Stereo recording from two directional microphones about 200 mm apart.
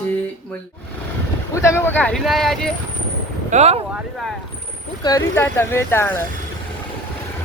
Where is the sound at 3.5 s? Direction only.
35° right (ahead or behind).